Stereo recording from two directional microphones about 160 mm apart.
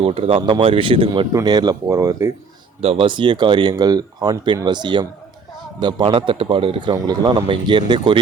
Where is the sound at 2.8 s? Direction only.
35° right (ahead or behind).